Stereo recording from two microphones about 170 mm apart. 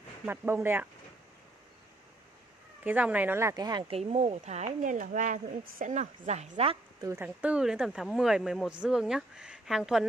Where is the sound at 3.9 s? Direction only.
40° right (ahead or behind).